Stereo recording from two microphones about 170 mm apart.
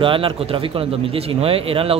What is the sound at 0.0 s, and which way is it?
Speech, 30° right (ahead or behind).